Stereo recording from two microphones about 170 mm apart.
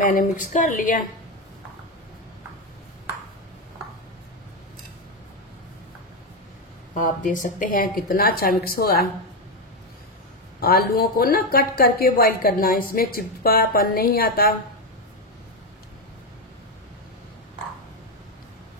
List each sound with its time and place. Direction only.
0.0 s a woman's voice: 50° left (ahead or behind)
6.9 s a woman's voice: 50° left (ahead or behind)
10.6 s speech: 60° left (ahead or behind)